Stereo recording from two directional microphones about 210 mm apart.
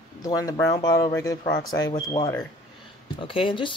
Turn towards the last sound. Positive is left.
turn(degrees=25)  # may be behind; listen again after turning